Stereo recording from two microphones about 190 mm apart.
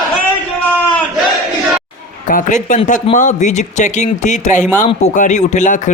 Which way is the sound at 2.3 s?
40° left (ahead or behind).